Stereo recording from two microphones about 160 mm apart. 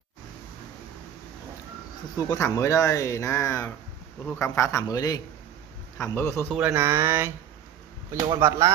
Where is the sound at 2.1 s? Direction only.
20° left (ahead or behind).